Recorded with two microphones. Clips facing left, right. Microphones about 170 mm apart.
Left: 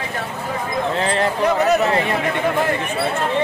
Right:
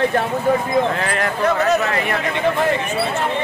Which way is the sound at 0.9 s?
25° left (ahead or behind).